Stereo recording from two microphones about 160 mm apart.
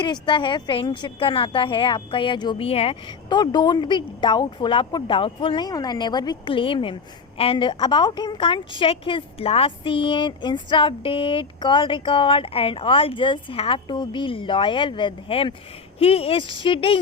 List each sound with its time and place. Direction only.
0.0 s a woman's voice: 30° left (ahead or behind)